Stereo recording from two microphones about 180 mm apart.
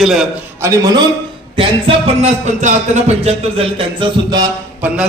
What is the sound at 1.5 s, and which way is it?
Speech, 35° right (ahead or behind).